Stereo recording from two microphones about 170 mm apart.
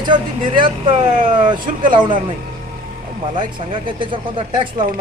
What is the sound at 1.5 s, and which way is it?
Speech, 55° right (ahead or behind).